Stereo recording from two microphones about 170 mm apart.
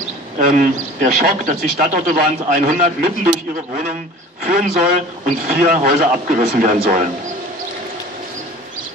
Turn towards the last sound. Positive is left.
turn(degrees=-50)  # may be behind; listen again after turning